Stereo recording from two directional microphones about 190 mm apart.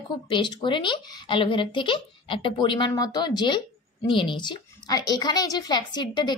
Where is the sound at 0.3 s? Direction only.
25° left (ahead or behind).